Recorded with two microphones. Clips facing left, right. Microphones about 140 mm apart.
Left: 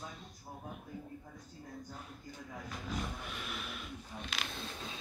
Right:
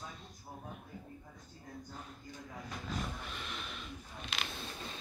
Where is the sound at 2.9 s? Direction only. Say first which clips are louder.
Left 1 dB; 5° left (ahead or behind).